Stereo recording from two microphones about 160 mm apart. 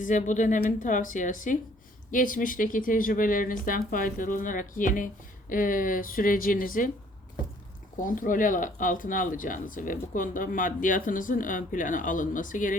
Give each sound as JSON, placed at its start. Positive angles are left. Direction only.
{"t": 0.0, "sound": "speech", "side_deg": 50}
{"t": 8.0, "sound": "speech", "side_deg": 55}